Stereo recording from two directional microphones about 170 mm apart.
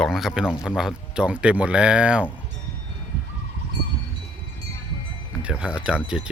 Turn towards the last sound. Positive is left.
turn(degrees=-5)  # may be behind; listen again after turning